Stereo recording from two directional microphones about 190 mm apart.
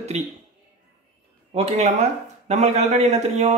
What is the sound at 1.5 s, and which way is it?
Speech, 35° right (ahead or behind).